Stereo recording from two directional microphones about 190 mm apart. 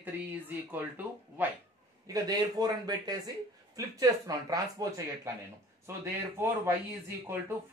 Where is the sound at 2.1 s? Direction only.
20° right (ahead or behind).